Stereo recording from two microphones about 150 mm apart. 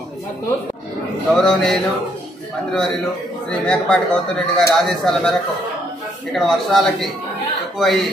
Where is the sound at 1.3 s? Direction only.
5° left (ahead or behind).